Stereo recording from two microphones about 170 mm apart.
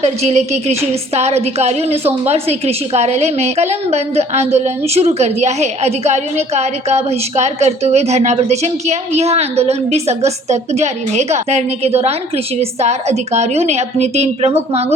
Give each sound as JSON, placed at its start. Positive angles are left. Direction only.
{"t": 0.0, "sound": "a woman's voice", "side_deg": -40}